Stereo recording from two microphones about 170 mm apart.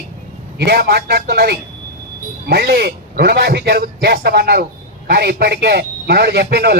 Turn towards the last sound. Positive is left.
turn(degrees=-70)  # may be behind; listen again after turning